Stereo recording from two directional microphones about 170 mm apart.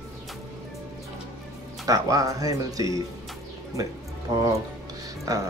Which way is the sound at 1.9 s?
20° right (ahead or behind).